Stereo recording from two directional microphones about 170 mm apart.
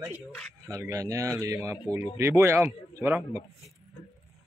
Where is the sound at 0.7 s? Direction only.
20° right (ahead or behind).